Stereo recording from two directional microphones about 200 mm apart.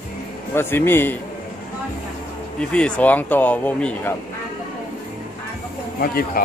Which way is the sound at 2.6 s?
5° left (ahead or behind).